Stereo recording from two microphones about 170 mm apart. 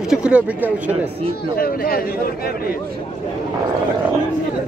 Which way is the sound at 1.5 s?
60° left (ahead or behind).